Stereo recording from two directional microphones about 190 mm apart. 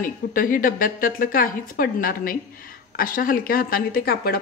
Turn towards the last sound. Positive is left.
turn(degrees=50)  # may be behind; listen again after turning